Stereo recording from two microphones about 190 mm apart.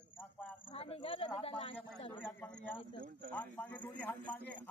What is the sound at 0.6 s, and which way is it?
Speech, 30° left (ahead or behind).